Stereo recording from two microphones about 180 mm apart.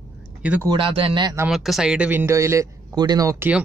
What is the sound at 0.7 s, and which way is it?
Speech, 30° right (ahead or behind).